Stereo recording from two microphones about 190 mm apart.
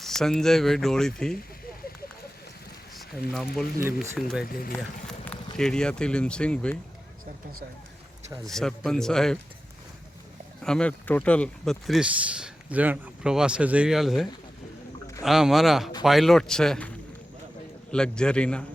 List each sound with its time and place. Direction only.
0.0 s speech: centre (ahead or behind)
2.9 s speech: centre (ahead or behind)
4.4 s speech: 50° left (ahead or behind)
4.8 s speech: 5° left (ahead or behind)
8.4 s speech: centre (ahead or behind)
10.6 s speech: 5° left (ahead or behind)
17.9 s speech: 5° left (ahead or behind)